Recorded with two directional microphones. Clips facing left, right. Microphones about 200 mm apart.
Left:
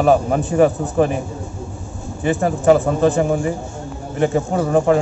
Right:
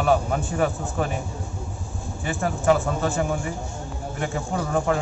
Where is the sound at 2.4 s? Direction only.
35° left (ahead or behind).